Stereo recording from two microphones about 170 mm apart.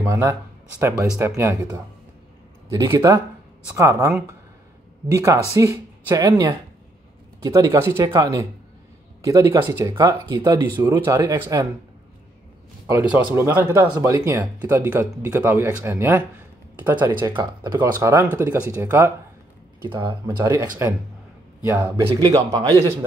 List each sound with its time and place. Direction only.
0.0 s speech: 15° right (ahead or behind)
1.3 s speech: 15° right (ahead or behind)
2.9 s speech: 15° right (ahead or behind)
12.8 s speech: 15° right (ahead or behind)
17.4 s speech: 20° right (ahead or behind)
19.8 s speech: 25° right (ahead or behind); by 21.9 s 10° right (ahead or behind)
21.9 s speech: 25° right (ahead or behind)